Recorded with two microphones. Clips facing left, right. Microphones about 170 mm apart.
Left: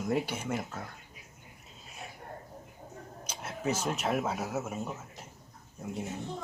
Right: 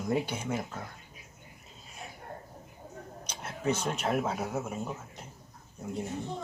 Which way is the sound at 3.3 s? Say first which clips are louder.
Right 2 dB; 5° left (ahead or behind).